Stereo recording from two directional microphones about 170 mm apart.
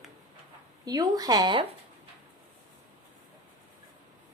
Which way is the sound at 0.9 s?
20° right (ahead or behind).